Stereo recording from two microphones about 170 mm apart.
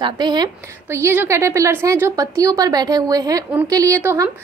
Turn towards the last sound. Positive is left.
turn(degrees=-15)  # may be behind; listen again after turning